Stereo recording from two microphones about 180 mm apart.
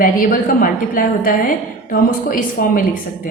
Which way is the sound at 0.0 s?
50° left (ahead or behind).